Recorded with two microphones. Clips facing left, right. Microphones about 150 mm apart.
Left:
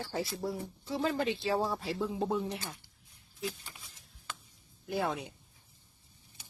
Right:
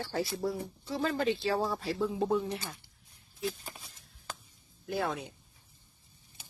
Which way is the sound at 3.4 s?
40° right (ahead or behind).